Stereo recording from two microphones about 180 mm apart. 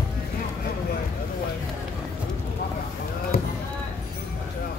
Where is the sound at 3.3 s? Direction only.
60° left (ahead or behind).